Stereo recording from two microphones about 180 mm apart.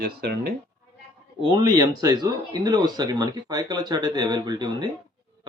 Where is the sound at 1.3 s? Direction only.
25° right (ahead or behind).